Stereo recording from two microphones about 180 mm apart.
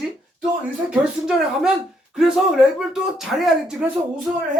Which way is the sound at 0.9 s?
5° right (ahead or behind).